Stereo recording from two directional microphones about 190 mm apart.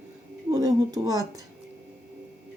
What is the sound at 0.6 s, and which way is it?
Speech, 20° right (ahead or behind).